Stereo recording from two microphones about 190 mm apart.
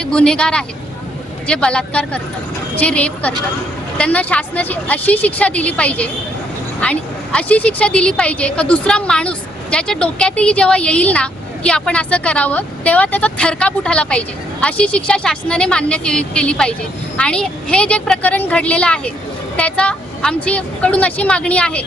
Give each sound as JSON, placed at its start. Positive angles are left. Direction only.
{"t": 0.0, "sound": "a woman's voice", "side_deg": 5}